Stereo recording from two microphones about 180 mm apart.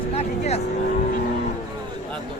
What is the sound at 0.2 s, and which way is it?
Vehicle, 35° left (ahead or behind).